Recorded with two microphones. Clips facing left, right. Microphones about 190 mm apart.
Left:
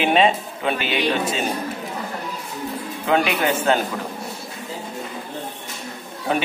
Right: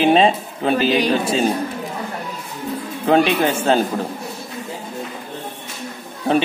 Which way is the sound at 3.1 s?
30° right (ahead or behind).